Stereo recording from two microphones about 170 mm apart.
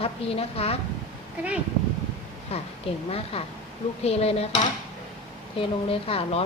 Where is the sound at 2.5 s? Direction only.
35° left (ahead or behind).